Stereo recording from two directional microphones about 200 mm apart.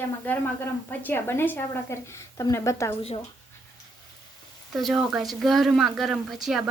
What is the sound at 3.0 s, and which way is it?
Speech, 30° left (ahead or behind).